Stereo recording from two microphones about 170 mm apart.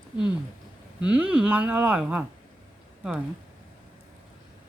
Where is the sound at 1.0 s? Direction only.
5° right (ahead or behind).